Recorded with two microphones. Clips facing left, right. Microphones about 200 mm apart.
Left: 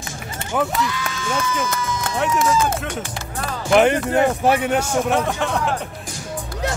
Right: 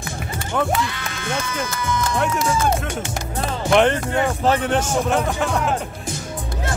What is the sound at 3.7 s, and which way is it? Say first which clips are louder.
Speech: left 2 dB; 10° left (ahead or behind).